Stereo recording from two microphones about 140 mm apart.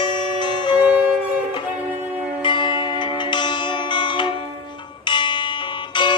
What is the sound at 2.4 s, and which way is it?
Music, 35° left (ahead or behind).